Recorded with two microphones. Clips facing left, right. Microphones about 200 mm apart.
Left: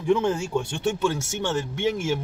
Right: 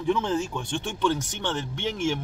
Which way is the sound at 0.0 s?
15° left (ahead or behind).